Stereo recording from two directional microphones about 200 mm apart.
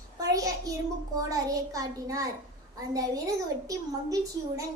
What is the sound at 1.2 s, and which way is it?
Speech, 15° right (ahead or behind).